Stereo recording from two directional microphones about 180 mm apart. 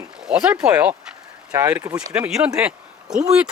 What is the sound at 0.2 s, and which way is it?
Speech, 5° right (ahead or behind).